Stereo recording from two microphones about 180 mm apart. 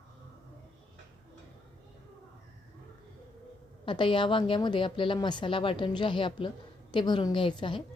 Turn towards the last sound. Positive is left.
turn(degrees=25)  # may be behind; listen again after turning